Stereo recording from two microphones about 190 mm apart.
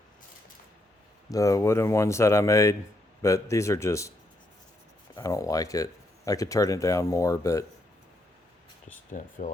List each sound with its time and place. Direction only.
1.3 s speech: 15° left (ahead or behind)
5.1 s speech: 15° left (ahead or behind)
9.1 s speech: 45° left (ahead or behind)